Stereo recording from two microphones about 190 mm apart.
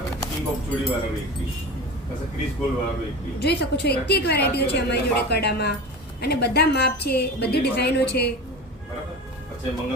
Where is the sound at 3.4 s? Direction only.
60° left (ahead or behind).